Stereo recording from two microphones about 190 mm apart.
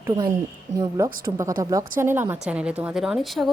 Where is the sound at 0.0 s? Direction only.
20° right (ahead or behind).